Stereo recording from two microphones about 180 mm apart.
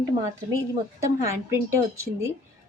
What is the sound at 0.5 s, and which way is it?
Speech, 15° right (ahead or behind).